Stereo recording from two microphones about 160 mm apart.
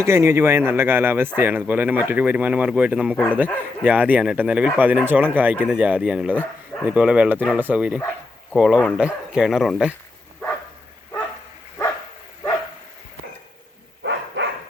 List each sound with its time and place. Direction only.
0.0 s speech: 15° right (ahead or behind)
14.0 s dog: 90° right